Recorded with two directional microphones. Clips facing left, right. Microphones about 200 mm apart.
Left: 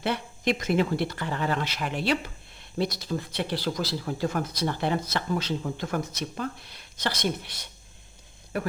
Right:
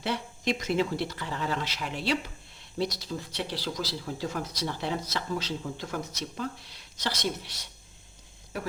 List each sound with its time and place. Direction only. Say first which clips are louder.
0.0 s speech: left 3 dB; 55° left (ahead or behind)